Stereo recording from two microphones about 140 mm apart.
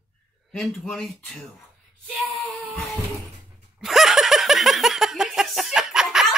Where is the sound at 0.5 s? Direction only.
5° left (ahead or behind).